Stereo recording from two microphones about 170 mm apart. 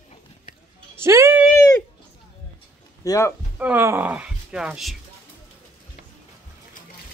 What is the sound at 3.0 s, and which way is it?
Speech, 20° left (ahead or behind).